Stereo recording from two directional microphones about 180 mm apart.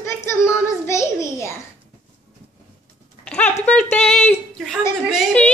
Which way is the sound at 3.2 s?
10° left (ahead or behind).